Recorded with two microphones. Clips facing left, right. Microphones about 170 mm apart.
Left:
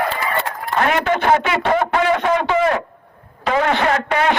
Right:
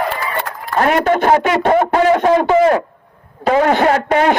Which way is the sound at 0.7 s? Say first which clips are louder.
Right 4 dB; 45° right (ahead or behind).